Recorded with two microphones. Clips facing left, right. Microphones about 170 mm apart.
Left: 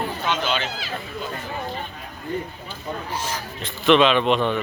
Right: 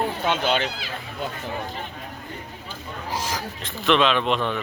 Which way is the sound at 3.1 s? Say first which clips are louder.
Right 4 dB; 90° right.